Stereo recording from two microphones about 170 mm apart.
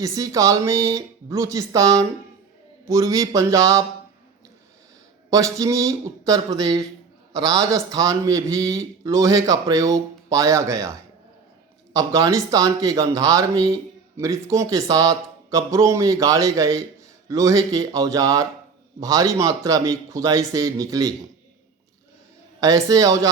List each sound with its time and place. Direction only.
0.0 s speech: 20° right (ahead or behind)
5.3 s speech: 20° right (ahead or behind)
11.9 s speech: 20° right (ahead or behind)
22.6 s speech: 20° right (ahead or behind)